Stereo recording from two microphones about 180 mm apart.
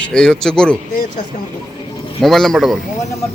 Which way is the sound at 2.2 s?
Centre (ahead or behind).